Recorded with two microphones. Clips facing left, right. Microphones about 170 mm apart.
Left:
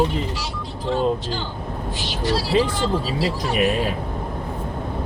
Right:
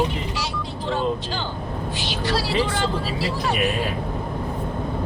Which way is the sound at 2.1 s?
70° right (ahead or behind).